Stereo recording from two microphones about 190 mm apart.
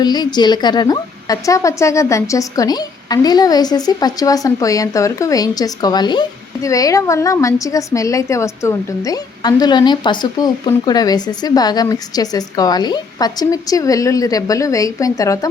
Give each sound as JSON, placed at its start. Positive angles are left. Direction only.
{"t": 0.0, "sound": "a woman's voice", "side_deg": 20}